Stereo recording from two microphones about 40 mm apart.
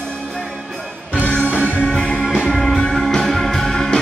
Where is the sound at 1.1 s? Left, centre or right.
Left.